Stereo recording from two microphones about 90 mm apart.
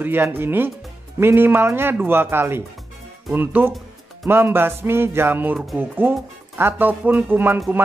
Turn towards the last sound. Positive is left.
turn(degrees=-20)  # may be behind; listen again after turning